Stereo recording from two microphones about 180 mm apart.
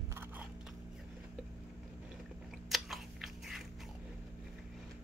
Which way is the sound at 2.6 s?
Centre (ahead or behind).